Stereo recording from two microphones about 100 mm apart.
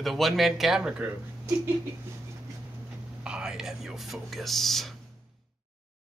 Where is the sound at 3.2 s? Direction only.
5° right (ahead or behind).